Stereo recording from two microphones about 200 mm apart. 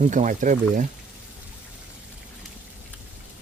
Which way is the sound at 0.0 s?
40° right (ahead or behind).